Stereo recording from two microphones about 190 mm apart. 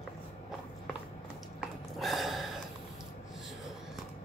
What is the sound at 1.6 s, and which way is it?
Gasp, centre (ahead or behind).